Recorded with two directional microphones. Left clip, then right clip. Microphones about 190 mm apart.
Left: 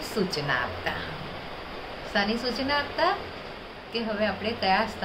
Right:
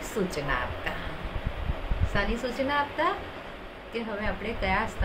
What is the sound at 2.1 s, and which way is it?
Speech, 10° left (ahead or behind).